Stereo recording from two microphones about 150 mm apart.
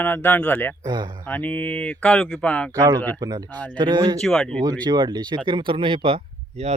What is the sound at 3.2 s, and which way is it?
Speech, 30° right (ahead or behind).